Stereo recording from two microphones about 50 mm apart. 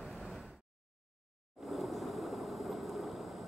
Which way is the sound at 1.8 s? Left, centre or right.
Centre.